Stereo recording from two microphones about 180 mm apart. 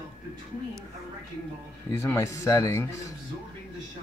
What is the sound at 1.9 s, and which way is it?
Speech, 15° left (ahead or behind).